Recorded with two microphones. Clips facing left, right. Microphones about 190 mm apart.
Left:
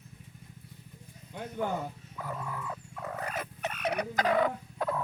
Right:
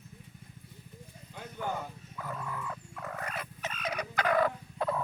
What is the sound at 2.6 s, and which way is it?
Dog, 20° left (ahead or behind).